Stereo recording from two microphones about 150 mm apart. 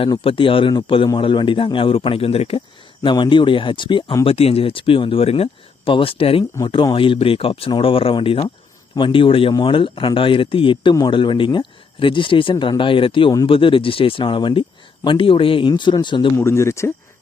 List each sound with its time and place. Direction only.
0.0 s speech: 35° left (ahead or behind)
16.4 s speech: 20° left (ahead or behind)